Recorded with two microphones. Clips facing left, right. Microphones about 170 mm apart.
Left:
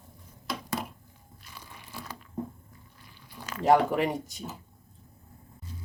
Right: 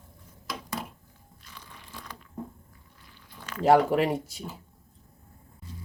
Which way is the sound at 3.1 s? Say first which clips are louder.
Left 2 dB; 10° left (ahead or behind).